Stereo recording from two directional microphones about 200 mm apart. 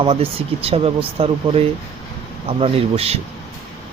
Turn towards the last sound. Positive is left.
turn(degrees=-30)  # may be behind; listen again after turning